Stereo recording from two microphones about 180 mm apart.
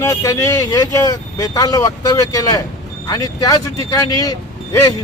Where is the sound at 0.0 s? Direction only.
15° left (ahead or behind).